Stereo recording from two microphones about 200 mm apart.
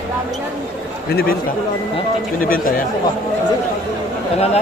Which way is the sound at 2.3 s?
45° left (ahead or behind).